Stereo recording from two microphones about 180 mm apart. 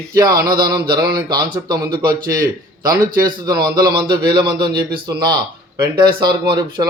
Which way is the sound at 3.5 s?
55° right (ahead or behind).